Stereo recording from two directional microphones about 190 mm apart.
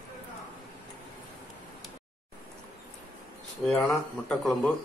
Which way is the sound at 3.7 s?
5° left (ahead or behind).